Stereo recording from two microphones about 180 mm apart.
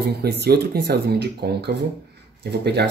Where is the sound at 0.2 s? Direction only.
60° right (ahead or behind).